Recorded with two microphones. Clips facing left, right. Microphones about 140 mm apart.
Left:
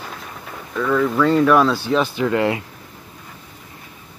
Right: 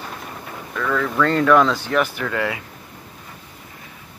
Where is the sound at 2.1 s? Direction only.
20° left (ahead or behind).